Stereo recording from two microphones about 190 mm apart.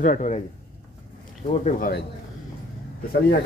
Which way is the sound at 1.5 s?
45° left (ahead or behind).